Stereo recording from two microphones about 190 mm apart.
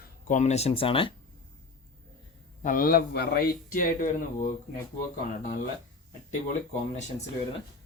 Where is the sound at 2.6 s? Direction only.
45° left (ahead or behind).